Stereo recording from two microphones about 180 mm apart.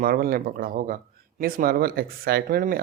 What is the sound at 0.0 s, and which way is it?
Speech, 55° right (ahead or behind).